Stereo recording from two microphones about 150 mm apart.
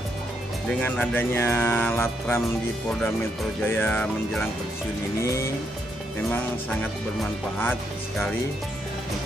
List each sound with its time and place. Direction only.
0.7 s speech: 10° left (ahead or behind)
3.6 s speech: 15° left (ahead or behind)
5.2 s music: 20° left (ahead or behind)